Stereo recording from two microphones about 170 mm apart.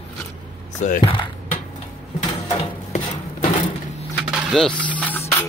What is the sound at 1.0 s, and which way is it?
Speech, 30° left (ahead or behind).